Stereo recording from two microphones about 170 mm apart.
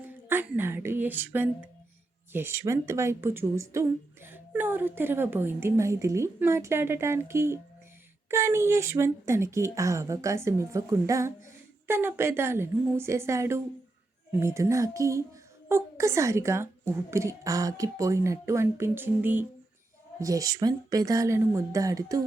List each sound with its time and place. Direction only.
0.0 s speech: 10° right (ahead or behind)